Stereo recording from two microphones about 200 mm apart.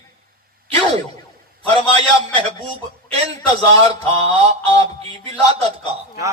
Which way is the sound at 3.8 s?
30° right (ahead or behind).